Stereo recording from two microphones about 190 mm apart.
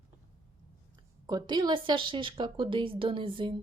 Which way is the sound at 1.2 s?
20° right (ahead or behind).